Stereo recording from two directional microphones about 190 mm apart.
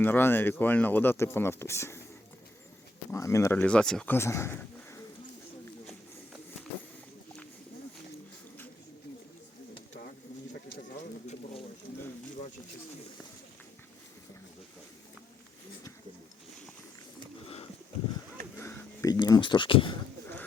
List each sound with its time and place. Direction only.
0.0 s speech: 10° left (ahead or behind)
3.1 s speech: 15° left (ahead or behind)
17.4 s sniff: 30° left (ahead or behind)
18.5 s a sound: 15° left (ahead or behind)